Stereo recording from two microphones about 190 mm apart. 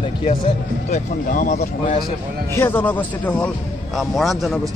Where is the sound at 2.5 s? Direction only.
10° left (ahead or behind).